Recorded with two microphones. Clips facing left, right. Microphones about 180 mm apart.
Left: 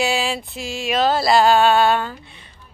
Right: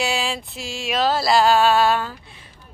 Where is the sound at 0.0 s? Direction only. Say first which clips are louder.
Left 3 dB; centre (ahead or behind).